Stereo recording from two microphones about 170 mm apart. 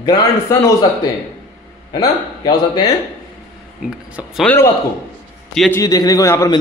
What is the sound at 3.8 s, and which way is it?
Speech, centre (ahead or behind).